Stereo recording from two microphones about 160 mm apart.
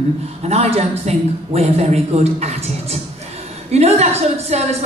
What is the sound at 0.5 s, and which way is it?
A man's voice, 40° right (ahead or behind).